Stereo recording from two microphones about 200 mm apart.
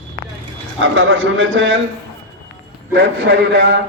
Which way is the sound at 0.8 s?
80° right.